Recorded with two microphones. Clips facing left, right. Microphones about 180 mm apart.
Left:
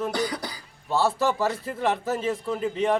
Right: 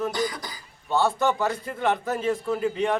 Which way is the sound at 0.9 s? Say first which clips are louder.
Right 1 dB; centre (ahead or behind).